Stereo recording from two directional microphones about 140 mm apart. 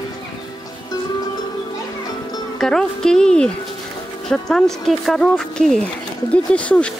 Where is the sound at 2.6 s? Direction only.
5° left (ahead or behind).